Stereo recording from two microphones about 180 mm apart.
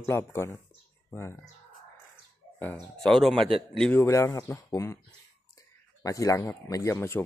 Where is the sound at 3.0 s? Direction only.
Centre (ahead or behind).